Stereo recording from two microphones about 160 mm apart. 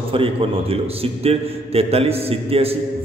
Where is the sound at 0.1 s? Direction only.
35° right (ahead or behind).